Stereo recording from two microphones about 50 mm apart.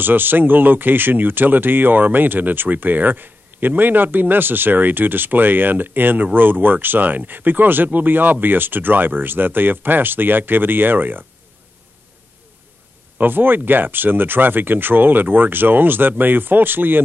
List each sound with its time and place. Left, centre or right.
0.0 s speech: right
13.2 s speech: right